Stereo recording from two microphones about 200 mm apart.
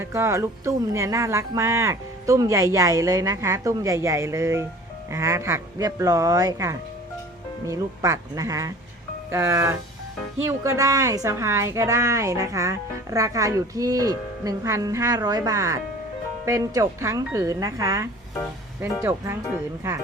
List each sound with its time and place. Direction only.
0.0 s a woman's voice: 15° right (ahead or behind)